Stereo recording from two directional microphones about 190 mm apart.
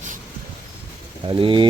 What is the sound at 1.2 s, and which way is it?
Speech, 25° right (ahead or behind).